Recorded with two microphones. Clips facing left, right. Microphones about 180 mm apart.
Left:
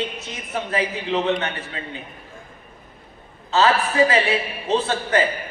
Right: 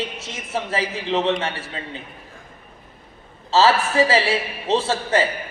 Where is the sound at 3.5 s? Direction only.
30° right (ahead or behind).